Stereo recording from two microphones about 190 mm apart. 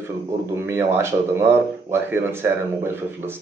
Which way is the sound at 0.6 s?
10° right (ahead or behind).